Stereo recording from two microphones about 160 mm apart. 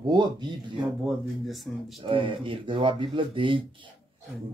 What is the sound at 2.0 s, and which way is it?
Speech, 30° right (ahead or behind).